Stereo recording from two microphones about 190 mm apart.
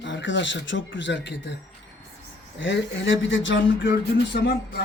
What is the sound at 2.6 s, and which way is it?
Speech, 85° left.